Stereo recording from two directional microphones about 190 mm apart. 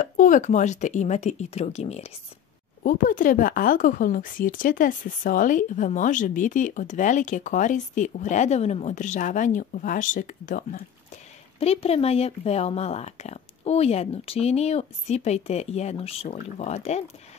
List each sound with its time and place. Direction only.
0.0 s speech: 40° left (ahead or behind)
2.8 s speech: 45° left (ahead or behind)
11.6 s speech: 30° left (ahead or behind)